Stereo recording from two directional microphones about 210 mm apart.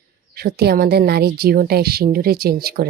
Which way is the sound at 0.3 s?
50° right (ahead or behind).